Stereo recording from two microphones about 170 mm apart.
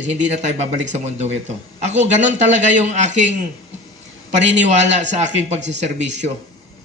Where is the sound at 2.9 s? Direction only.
45° right (ahead or behind).